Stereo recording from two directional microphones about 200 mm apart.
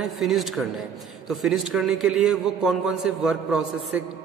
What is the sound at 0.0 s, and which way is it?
A man's voice, centre (ahead or behind).